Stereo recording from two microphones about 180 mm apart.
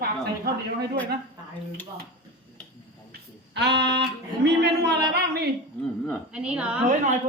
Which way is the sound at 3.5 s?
70° right (ahead or behind).